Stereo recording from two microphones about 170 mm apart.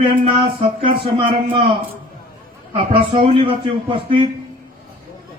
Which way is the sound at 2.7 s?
35° right (ahead or behind).